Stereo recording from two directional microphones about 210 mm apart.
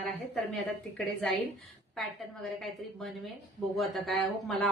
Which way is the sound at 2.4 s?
Centre (ahead or behind).